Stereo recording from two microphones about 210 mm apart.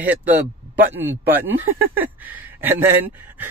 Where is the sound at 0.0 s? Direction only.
5° right (ahead or behind).